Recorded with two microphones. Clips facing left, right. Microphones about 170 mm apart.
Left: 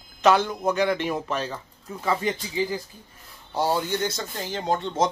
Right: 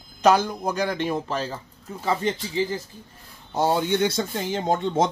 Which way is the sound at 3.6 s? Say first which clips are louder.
Right 3 dB; 55° right (ahead or behind).